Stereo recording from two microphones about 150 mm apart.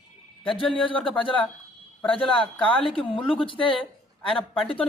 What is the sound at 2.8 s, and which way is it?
A man's voice, 35° left (ahead or behind).